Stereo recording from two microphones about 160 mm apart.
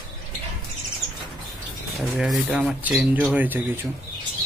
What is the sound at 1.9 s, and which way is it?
Speech, centre (ahead or behind).